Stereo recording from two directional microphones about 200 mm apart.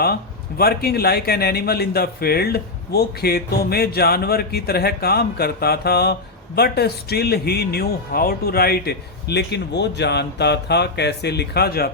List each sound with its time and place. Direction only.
0.0 s speech: 50° left (ahead or behind)